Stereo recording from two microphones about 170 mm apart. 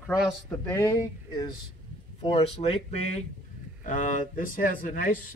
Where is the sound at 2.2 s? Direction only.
35° left (ahead or behind).